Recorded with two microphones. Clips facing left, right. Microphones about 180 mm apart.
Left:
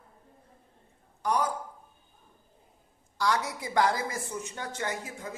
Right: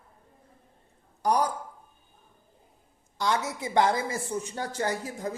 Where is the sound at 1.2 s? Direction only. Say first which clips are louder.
Right 3 dB; 35° right (ahead or behind).